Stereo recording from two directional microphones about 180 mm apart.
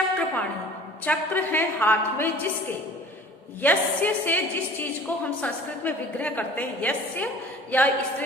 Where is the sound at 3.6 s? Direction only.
10° left (ahead or behind).